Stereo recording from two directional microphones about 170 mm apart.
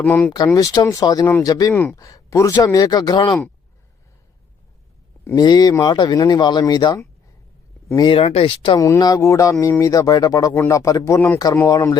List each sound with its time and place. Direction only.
0.0 s speech: 10° left (ahead or behind)
5.2 s speech: 20° left (ahead or behind)
8.1 s speech: 35° left (ahead or behind); by 11.9 s 15° left (ahead or behind)